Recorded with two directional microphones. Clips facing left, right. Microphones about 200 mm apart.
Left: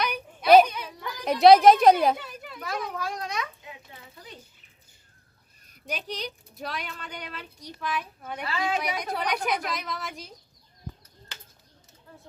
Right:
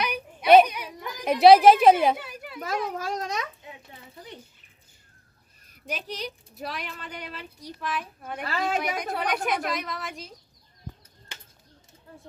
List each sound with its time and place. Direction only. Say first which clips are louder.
0.0 s a sound: even; 5° right (ahead or behind)
0.7 s baby cry: even; 15° right (ahead or behind)
2.9 s a child's voice: right 2 dB; 40° right (ahead or behind)
5.9 s a woman's voice: even; 5° right (ahead or behind)
8.4 s a woman's voice: right 1 dB; 50° right (ahead or behind)
9.1 s a woman's voice: even; centre (ahead or behind)